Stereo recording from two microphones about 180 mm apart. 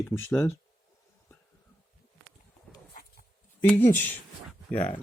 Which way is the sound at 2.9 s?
55° left (ahead or behind).